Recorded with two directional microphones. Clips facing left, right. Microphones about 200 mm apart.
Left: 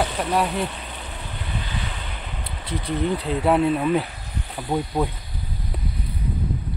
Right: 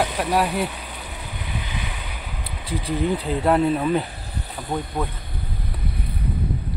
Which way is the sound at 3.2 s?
Centre (ahead or behind).